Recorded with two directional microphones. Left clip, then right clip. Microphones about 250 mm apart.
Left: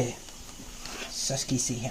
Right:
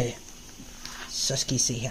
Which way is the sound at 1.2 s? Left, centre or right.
Centre.